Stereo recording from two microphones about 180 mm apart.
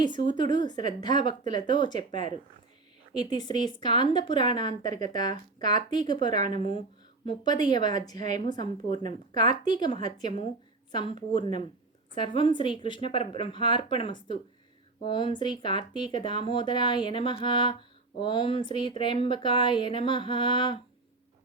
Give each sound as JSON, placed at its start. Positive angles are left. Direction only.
{"t": 0.0, "sound": "speech", "side_deg": 25}